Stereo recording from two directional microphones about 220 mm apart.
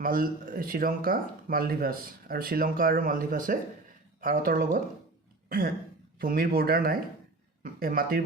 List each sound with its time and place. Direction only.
0.0 s speech: 40° right (ahead or behind)
6.1 s speech: 40° right (ahead or behind)